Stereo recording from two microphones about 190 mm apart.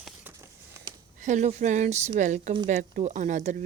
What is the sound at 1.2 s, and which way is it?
Speech, 40° right (ahead or behind).